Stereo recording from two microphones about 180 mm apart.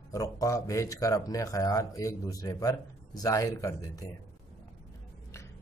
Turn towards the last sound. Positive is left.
turn(degrees=20)  # may be behind; listen again after turning